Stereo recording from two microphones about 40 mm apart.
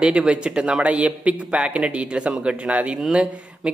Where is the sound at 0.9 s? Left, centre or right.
Right.